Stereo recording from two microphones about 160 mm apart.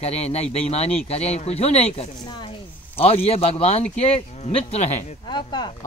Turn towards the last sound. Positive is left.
turn(degrees=30)  # may be behind; listen again after turning